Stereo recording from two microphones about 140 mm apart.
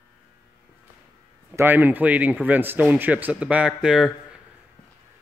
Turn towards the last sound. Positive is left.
turn(degrees=-5)  # may be behind; listen again after turning